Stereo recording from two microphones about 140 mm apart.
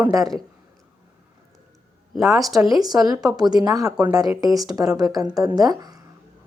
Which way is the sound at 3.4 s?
30° right (ahead or behind).